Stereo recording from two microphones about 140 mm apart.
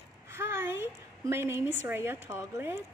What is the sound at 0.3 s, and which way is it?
A woman's voice, 15° right (ahead or behind).